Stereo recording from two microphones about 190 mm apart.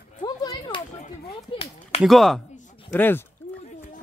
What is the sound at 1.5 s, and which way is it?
Speech, 30° left (ahead or behind).